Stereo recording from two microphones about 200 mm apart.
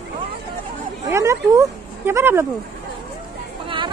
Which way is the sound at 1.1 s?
15° right (ahead or behind).